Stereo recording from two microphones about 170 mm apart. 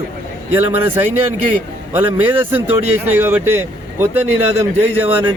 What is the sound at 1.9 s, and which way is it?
A man's voice, 10° right (ahead or behind).